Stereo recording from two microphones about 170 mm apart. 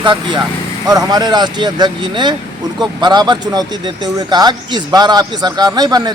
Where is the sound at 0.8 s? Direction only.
20° right (ahead or behind).